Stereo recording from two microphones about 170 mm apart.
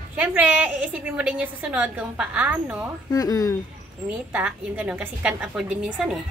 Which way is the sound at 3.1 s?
20° left (ahead or behind).